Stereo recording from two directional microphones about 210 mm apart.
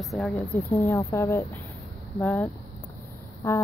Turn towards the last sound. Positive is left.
turn(degrees=15)  # may be behind; listen again after turning